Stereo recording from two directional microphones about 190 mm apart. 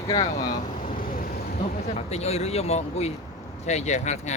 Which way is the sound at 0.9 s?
45° left (ahead or behind).